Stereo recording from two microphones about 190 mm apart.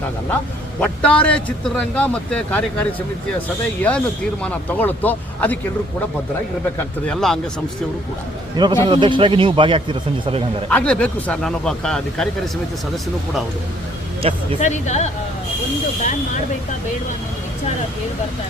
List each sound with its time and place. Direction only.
0.8 s a man's voice: 5° left (ahead or behind)
6.7 s speech: 5° left (ahead or behind)
8.6 s speech: 20° right (ahead or behind)
10.7 s speech: 5° left (ahead or behind)
14.2 s speech: 30° right (ahead or behind)
14.6 s speech: 40° left (ahead or behind)